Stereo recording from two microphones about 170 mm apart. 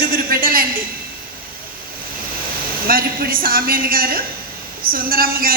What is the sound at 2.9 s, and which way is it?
A woman's voice, 60° right (ahead or behind).